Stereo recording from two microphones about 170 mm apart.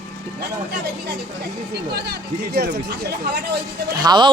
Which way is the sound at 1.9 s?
70° right (ahead or behind).